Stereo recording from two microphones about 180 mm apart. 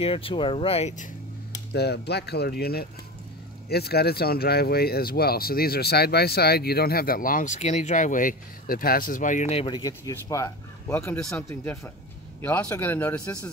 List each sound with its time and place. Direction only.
0.0 s speech: 30° left (ahead or behind)
1.7 s speech: 65° left (ahead or behind); by 11.1 s 15° left (ahead or behind)
12.4 s speech: 15° left (ahead or behind)